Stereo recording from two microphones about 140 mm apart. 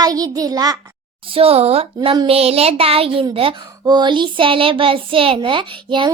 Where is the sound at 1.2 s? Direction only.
40° right (ahead or behind).